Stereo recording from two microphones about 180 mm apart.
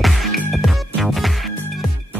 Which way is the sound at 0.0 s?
Centre (ahead or behind).